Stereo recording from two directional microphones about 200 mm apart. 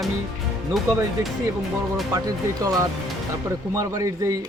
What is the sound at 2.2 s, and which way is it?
Speech, 20° right (ahead or behind).